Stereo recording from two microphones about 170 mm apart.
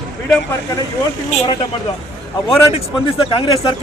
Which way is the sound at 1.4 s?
25° left (ahead or behind).